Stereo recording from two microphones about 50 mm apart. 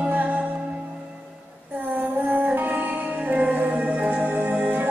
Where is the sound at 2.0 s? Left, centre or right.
Right.